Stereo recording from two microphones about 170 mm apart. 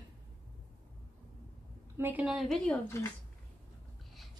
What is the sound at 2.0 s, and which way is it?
A woman's voice, 10° right (ahead or behind).